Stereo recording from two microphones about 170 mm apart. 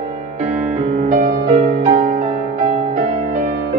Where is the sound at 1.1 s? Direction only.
45° right (ahead or behind).